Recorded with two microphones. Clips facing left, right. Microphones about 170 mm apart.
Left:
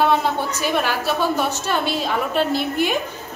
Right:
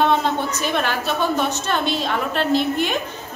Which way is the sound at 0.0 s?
5° left (ahead or behind).